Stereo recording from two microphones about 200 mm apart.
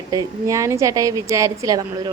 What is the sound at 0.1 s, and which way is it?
Speech, 15° right (ahead or behind).